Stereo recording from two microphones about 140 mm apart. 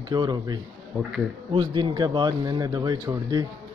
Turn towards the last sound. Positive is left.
turn(degrees=-30)  # may be behind; listen again after turning